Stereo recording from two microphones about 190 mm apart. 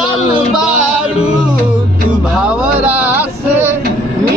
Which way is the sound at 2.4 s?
5° right (ahead or behind).